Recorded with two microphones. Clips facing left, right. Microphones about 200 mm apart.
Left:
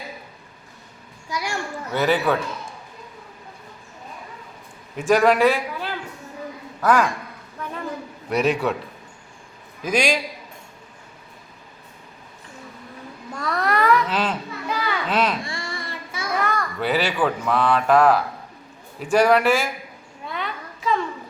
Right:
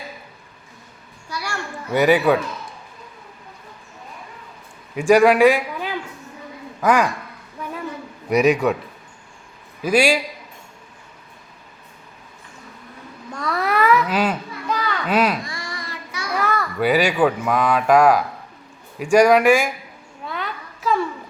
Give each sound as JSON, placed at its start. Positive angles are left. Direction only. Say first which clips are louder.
{"t": 1.3, "sound": "a sound", "louder": "left 2 dB", "side_deg": 15}
{"t": 1.9, "sound": "speech", "louder": "right 5 dB", "side_deg": -15}
{"t": 4.9, "sound": "a man's voice", "louder": "right 4 dB", "side_deg": -10}
{"t": 8.3, "sound": "speech", "louder": "right 5 dB", "side_deg": -10}
{"t": 9.8, "sound": "speech", "louder": "right 4 dB", "side_deg": -10}
{"t": 13.3, "sound": "cat", "louder": "right 1 dB", "side_deg": 0}
{"t": 14.7, "sound": "children playing", "louder": "right 2 dB", "side_deg": 10}
{"t": 15.0, "sound": "speech", "louder": "right 4 dB", "side_deg": -10}
{"t": 15.4, "sound": "child singing", "louder": "left 1 dB", "side_deg": 25}
{"t": 16.3, "sound": "a child's voice", "louder": "right 2 dB", "side_deg": -5}
{"t": 20.2, "sound": "a sound", "louder": "right 1 dB", "side_deg": 0}